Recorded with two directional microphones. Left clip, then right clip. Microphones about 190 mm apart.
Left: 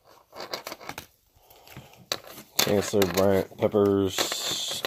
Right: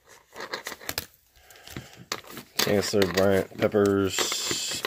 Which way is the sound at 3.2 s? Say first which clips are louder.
Even; 5° left (ahead or behind).